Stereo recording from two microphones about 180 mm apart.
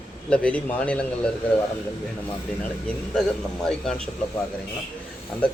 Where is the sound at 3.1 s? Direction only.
5° left (ahead or behind).